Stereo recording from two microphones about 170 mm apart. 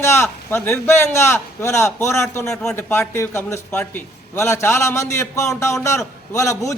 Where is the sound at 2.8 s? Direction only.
15° left (ahead or behind).